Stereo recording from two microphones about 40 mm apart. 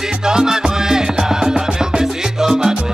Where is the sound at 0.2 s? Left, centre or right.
Centre.